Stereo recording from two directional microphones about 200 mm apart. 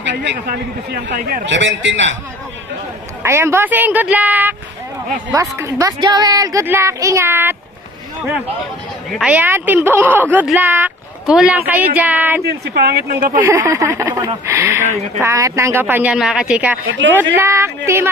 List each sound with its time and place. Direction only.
0.0 s a man's voice: 60° right (ahead or behind)
1.4 s a man's voice: 60° right (ahead or behind)
3.2 s speech: 15° right (ahead or behind)
9.1 s speech: 5° right (ahead or behind)
12.4 s speech: 50° right (ahead or behind)
13.4 s speech: 10° right (ahead or behind)